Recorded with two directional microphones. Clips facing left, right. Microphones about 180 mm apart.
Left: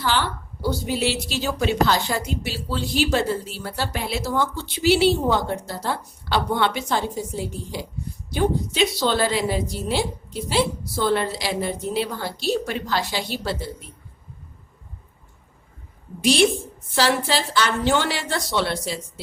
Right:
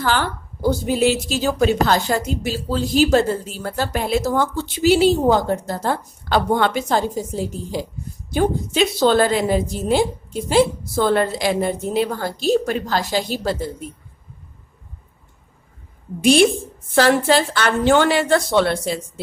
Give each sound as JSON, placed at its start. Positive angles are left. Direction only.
{"t": 0.0, "sound": "a woman's voice", "side_deg": -45}
{"t": 16.2, "sound": "a woman's voice", "side_deg": -55}